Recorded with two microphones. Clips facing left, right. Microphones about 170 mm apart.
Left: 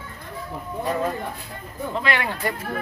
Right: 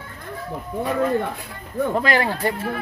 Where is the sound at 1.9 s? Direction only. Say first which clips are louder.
Right 3 dB; 40° right (ahead or behind).